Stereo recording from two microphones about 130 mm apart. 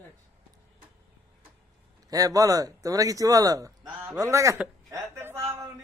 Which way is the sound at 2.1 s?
25° right (ahead or behind).